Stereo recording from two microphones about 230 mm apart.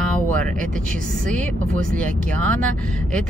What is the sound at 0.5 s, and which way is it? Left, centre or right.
Speech, right.